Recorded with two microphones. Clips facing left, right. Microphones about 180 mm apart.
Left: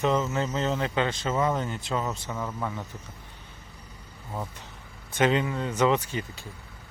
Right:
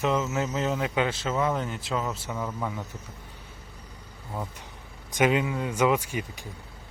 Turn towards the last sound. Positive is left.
turn(degrees=-15)  # may be behind; listen again after turning